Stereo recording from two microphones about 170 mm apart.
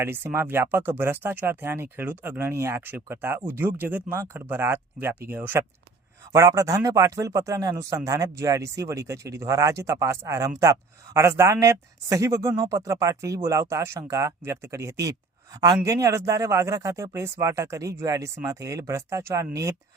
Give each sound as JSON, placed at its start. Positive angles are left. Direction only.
{"t": 0.0, "sound": "speech", "side_deg": -15}